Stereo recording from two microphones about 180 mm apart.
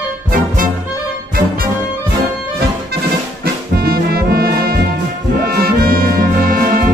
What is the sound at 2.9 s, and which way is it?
Music, 65° right (ahead or behind).